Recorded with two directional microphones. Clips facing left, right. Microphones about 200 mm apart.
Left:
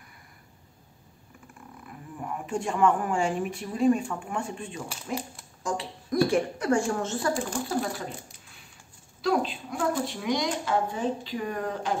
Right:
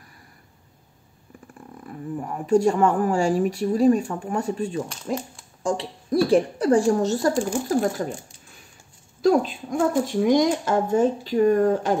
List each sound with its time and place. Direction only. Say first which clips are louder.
2.4 s speech: right 7 dB; 40° right (ahead or behind)
4.8 s speech: right 5 dB; 5° left (ahead or behind)
5.6 s speech: right 6 dB; 30° right (ahead or behind)
9.2 s speech: right 7 dB; 45° right (ahead or behind)